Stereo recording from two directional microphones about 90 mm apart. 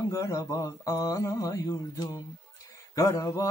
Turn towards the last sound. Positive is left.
turn(degrees=35)  # may be behind; listen again after turning